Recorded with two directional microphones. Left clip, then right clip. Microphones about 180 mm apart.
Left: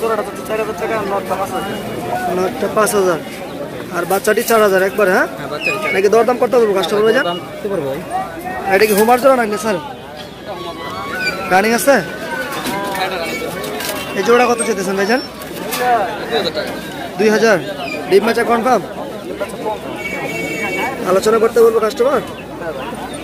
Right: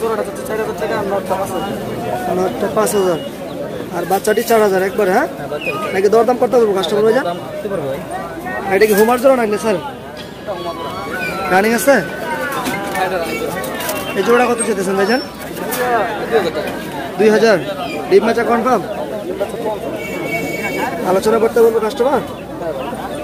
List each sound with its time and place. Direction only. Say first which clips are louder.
2.3 s speech: even; 10° right (ahead or behind)
8.6 s speech: even; centre (ahead or behind)
11.5 s speech: even; centre (ahead or behind)
14.1 s speech: left 1 dB; centre (ahead or behind)
17.2 s speech: right 1 dB; centre (ahead or behind)
21.1 s speech: left 1 dB; 5° right (ahead or behind)